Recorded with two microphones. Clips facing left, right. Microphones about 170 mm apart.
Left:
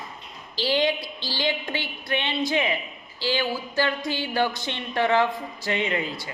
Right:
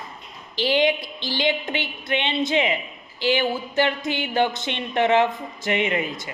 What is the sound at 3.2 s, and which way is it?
A man's voice, 20° right (ahead or behind).